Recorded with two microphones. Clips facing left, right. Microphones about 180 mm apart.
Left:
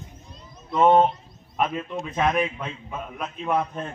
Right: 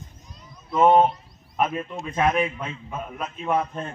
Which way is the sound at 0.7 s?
5° right (ahead or behind).